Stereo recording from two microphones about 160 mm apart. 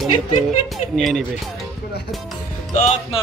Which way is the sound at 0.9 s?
Centre (ahead or behind).